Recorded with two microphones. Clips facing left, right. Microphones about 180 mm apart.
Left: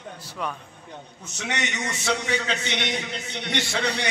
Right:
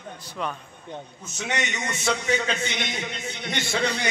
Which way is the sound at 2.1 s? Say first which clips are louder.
Right 1 dB; 70° left (ahead or behind).